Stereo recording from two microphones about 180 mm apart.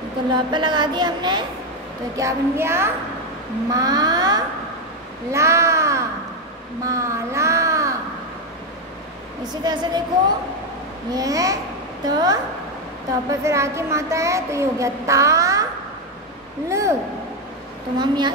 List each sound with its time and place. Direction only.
0.3 s a woman's voice: 25° right (ahead or behind)
3.7 s a sound: 20° right (ahead or behind)
5.3 s crow: 15° right (ahead or behind)
9.5 s a woman's voice: 25° right (ahead or behind)
11.1 s a woman's voice: 20° right (ahead or behind)
16.6 s a woman's voice: 15° right (ahead or behind)
17.9 s a woman's voice: 25° right (ahead or behind)